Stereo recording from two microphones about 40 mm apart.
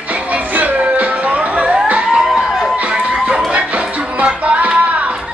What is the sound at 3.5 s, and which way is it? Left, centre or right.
Music, right.